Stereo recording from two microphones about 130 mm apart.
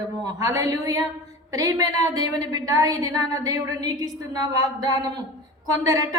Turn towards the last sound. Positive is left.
turn(degrees=-30)  # may be behind; listen again after turning